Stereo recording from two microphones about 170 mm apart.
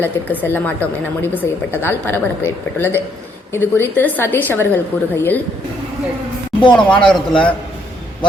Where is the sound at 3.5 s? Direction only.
10° left (ahead or behind).